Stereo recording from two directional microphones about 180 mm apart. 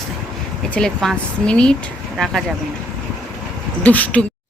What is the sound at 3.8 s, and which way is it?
Speech, 10° left (ahead or behind).